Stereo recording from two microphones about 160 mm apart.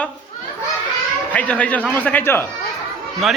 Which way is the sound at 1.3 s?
10° left (ahead or behind).